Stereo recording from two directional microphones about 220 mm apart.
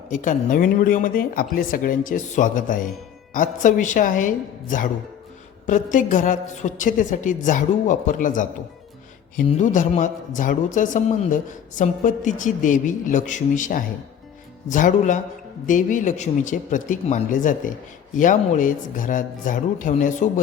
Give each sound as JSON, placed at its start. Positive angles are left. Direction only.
{"t": 0.1, "sound": "a woman's voice", "side_deg": 35}